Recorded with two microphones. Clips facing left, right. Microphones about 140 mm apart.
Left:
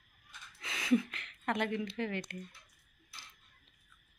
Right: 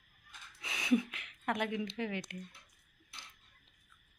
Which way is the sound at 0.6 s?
15° right (ahead or behind).